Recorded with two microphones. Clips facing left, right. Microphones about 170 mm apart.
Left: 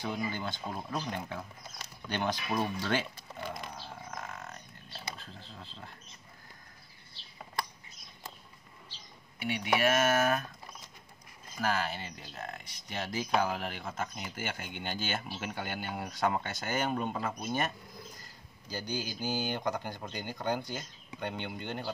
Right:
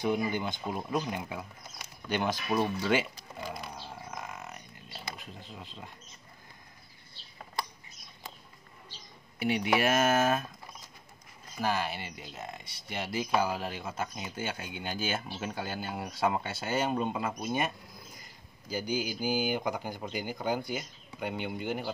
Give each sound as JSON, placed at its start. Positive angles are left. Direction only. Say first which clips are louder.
{"t": 0.0, "sound": "speech", "louder": "right 5 dB", "side_deg": -15}
{"t": 3.5, "sound": "a sound", "louder": "right 1 dB", "side_deg": -5}
{"t": 9.4, "sound": "speech", "louder": "right 2 dB", "side_deg": -30}
{"t": 11.6, "sound": "speech", "louder": "right 1 dB", "side_deg": -10}